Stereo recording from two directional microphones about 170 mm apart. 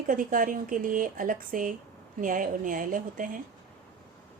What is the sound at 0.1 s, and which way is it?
Speech, 55° right (ahead or behind).